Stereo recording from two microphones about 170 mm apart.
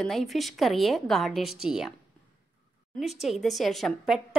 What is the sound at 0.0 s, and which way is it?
A woman's voice, centre (ahead or behind).